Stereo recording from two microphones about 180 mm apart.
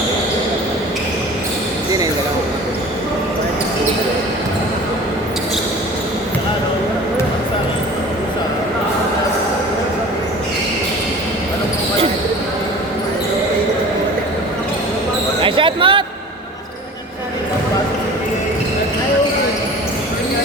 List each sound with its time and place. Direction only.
15.4 s basketball bounce: 30° right (ahead or behind)